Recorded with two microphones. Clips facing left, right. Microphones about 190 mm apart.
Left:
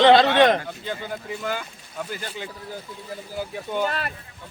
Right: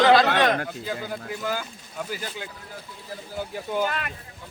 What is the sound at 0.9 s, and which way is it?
Speech, centre (ahead or behind).